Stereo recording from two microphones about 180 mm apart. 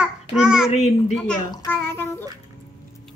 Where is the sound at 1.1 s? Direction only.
5° left (ahead or behind).